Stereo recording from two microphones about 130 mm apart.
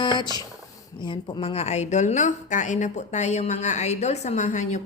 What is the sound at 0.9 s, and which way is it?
A woman's voice, 35° left (ahead or behind).